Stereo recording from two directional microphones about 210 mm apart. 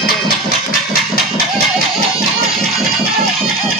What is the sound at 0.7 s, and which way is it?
Music, 45° left (ahead or behind).